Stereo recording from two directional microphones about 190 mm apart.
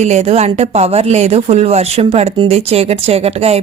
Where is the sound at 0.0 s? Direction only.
35° right (ahead or behind).